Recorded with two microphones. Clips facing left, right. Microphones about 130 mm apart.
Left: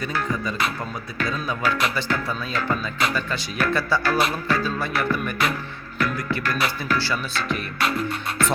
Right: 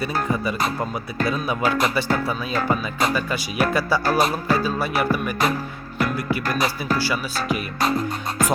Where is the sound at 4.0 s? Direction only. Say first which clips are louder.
Right 2 dB; 45° right (ahead or behind).